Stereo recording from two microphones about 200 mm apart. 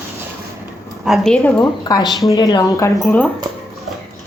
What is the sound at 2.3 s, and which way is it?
Speech, 20° left (ahead or behind).